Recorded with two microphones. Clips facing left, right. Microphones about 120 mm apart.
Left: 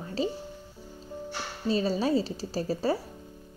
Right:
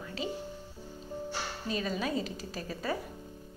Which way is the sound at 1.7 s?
30° left (ahead or behind).